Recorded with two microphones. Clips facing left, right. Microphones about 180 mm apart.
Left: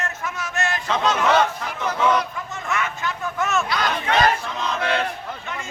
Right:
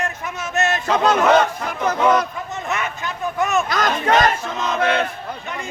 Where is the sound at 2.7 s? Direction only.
20° right (ahead or behind).